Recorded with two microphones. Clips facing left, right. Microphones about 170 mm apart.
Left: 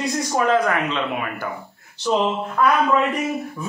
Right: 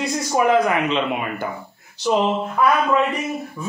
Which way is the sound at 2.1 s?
15° right (ahead or behind).